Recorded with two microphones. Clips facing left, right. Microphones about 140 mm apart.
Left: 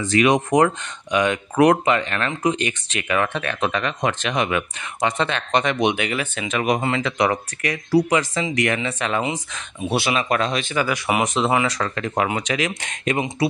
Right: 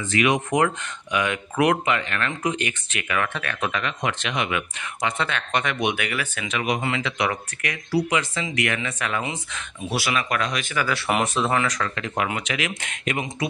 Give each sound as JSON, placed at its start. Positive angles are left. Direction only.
{"t": 0.1, "sound": "speech", "side_deg": 35}
{"t": 6.5, "sound": "speech", "side_deg": 45}
{"t": 9.8, "sound": "speech", "side_deg": 25}
{"t": 11.6, "sound": "speech", "side_deg": 30}